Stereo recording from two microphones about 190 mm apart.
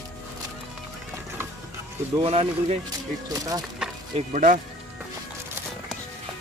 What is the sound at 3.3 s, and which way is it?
Speech, 20° right (ahead or behind).